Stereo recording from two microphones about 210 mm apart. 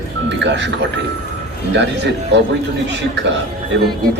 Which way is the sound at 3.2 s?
55° right (ahead or behind).